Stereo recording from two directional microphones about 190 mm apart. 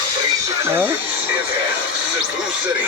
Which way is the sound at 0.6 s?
10° right (ahead or behind).